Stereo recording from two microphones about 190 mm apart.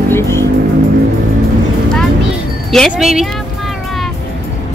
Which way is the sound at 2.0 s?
Centre (ahead or behind).